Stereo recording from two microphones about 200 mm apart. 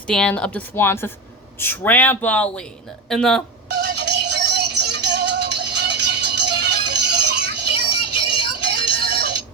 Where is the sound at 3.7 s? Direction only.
55° right (ahead or behind).